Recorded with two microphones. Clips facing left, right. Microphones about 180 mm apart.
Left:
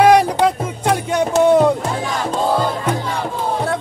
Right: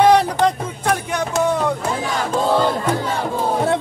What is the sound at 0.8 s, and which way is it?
Music, 25° left (ahead or behind).